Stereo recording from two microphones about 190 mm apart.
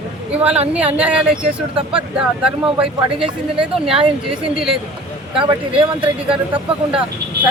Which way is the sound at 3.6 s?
5° right (ahead or behind).